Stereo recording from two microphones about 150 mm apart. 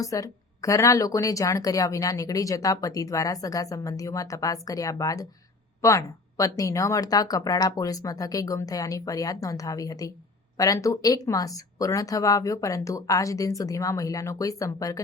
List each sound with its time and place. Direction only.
0.0 s speech: 20° left (ahead or behind)